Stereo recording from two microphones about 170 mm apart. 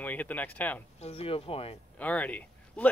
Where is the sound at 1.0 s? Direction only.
35° left (ahead or behind).